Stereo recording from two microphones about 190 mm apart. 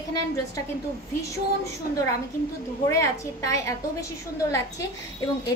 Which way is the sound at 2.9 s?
15° left (ahead or behind).